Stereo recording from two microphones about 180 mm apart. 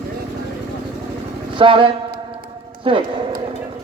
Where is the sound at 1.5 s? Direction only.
30° right (ahead or behind).